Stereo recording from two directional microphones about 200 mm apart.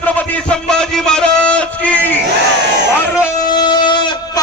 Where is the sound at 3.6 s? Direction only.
20° left (ahead or behind).